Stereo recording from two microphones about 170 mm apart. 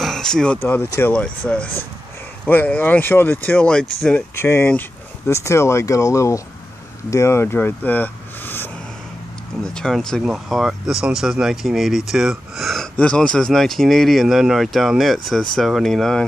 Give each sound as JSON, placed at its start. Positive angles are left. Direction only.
{"t": 0.0, "sound": "speech", "side_deg": 5}
{"t": 9.8, "sound": "speech", "side_deg": 5}